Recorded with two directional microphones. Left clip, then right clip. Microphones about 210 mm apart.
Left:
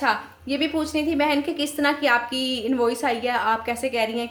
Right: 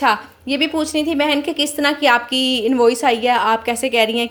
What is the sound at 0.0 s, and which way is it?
A woman's voice, 35° right (ahead or behind).